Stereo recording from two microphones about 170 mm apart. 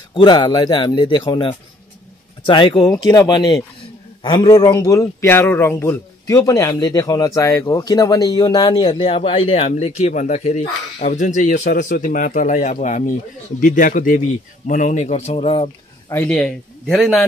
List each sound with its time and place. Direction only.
0.1 s a man's voice: 30° left (ahead or behind)
16.1 s a man's voice: 10° left (ahead or behind)